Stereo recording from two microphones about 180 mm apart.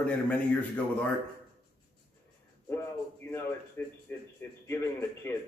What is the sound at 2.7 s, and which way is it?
Music, 15° left (ahead or behind).